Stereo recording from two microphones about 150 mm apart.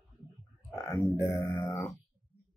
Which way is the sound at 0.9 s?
20° left (ahead or behind).